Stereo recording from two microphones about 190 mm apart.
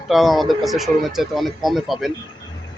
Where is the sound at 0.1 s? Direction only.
Centre (ahead or behind).